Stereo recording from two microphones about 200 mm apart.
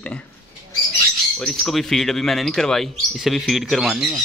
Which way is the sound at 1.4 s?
Centre (ahead or behind).